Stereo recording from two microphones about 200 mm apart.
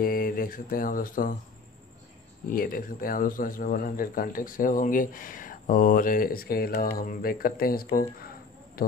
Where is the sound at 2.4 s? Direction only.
45° left (ahead or behind).